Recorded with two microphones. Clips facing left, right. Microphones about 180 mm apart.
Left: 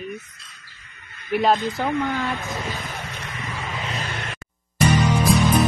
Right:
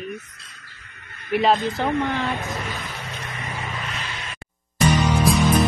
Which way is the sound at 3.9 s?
55° left (ahead or behind).